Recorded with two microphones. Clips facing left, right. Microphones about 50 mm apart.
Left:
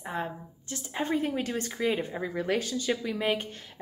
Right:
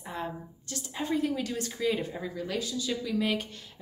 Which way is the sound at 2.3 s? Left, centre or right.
Left.